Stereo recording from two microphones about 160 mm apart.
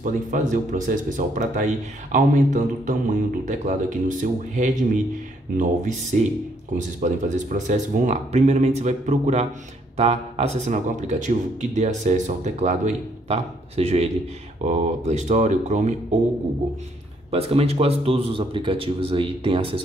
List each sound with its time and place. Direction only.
0.0 s speech: 50° right (ahead or behind)
6.1 s speech: 50° right (ahead or behind)
17.3 s speech: 40° right (ahead or behind)